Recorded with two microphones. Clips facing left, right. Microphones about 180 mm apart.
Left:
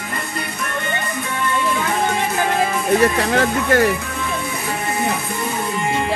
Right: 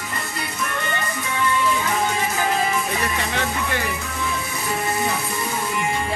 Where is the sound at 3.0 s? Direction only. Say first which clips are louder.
Left 8 dB; 60° left (ahead or behind).